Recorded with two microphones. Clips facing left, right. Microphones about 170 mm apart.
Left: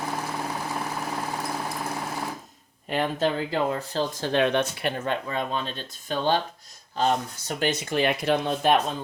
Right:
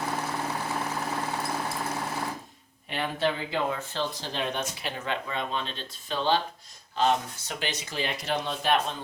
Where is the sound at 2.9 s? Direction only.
40° left (ahead or behind).